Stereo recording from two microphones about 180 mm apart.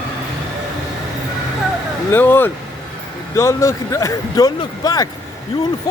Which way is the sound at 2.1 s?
10° left (ahead or behind).